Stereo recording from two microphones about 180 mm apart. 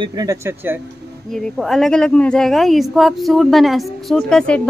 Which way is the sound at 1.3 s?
Centre (ahead or behind).